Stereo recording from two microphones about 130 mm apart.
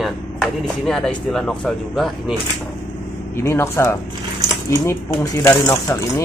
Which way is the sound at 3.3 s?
20° left (ahead or behind).